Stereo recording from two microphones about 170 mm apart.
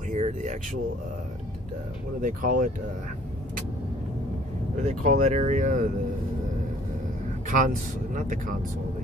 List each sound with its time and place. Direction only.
0.1 s a sound: 45° right (ahead or behind)
2.2 s speech: 50° right (ahead or behind)
4.7 s speech: 45° right (ahead or behind)
7.4 s speech: 50° right (ahead or behind)